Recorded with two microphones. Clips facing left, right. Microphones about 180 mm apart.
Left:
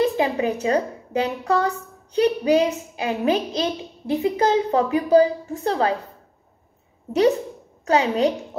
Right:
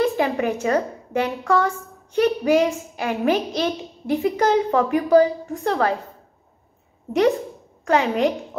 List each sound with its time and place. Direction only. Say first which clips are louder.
0.0 s a woman's voice: even; 25° left (ahead or behind)
2.2 s a woman's voice: even; 20° left (ahead or behind)
7.9 s a woman's voice: even; 30° left (ahead or behind)